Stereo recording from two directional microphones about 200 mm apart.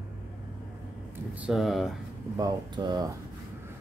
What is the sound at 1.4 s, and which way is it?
Speech, centre (ahead or behind).